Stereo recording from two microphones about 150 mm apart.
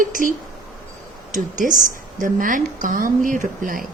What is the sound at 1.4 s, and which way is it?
Speech, 60° right (ahead or behind).